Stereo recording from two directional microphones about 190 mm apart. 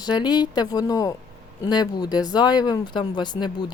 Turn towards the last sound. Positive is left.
turn(degrees=25)  # may be behind; listen again after turning